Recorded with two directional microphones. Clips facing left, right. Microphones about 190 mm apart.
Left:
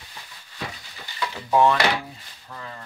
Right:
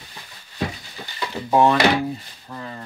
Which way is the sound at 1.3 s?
25° right (ahead or behind).